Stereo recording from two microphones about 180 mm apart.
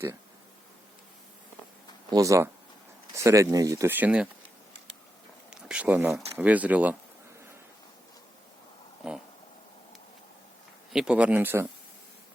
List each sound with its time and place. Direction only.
2.1 s speech: 15° right (ahead or behind)
5.5 s speech: 5° right (ahead or behind)
10.9 s speech: 5° right (ahead or behind)